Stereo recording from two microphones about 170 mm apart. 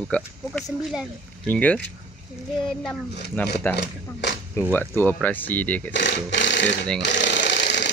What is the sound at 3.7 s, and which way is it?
Speech, 85° left.